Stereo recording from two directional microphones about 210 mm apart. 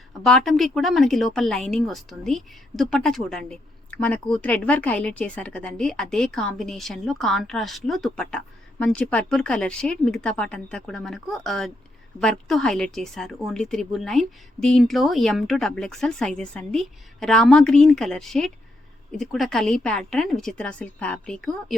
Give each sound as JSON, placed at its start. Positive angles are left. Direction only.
{"t": 0.2, "sound": "a woman's voice", "side_deg": 0}